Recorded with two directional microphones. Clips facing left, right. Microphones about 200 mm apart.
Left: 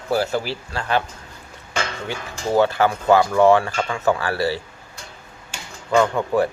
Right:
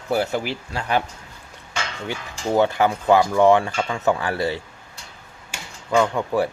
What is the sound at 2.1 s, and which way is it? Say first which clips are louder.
Speech: even; 15° right (ahead or behind).